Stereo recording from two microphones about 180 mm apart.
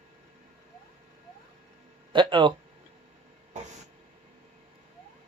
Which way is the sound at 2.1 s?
25° right (ahead or behind).